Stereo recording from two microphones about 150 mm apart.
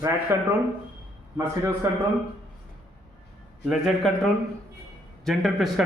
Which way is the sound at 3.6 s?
Centre (ahead or behind).